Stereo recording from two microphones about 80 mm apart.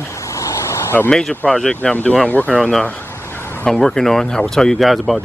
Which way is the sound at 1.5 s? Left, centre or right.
Centre.